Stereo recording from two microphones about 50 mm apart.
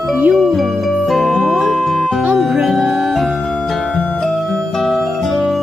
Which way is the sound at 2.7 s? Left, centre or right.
Centre.